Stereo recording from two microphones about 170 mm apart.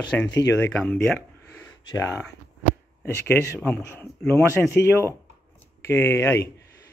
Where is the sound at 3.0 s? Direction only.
15° left (ahead or behind).